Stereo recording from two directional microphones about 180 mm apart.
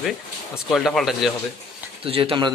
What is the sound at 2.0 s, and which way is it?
Speech, 30° right (ahead or behind).